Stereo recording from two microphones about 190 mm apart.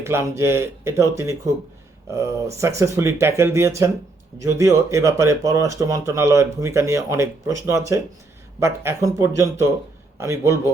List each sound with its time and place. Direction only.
0.0 s speech: 15° right (ahead or behind)